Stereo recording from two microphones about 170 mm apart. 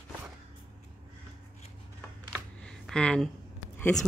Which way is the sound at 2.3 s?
5° left (ahead or behind).